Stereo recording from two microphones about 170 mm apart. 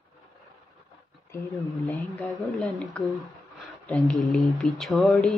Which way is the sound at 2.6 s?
5° left (ahead or behind).